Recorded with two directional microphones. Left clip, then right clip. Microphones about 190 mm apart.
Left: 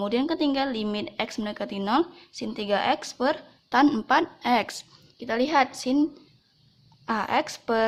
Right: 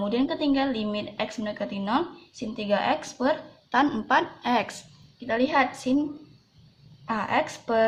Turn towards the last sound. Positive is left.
turn(degrees=40)  # may be behind; listen again after turning